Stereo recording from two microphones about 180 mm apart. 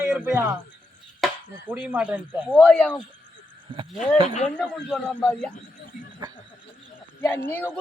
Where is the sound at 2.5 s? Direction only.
5° left (ahead or behind).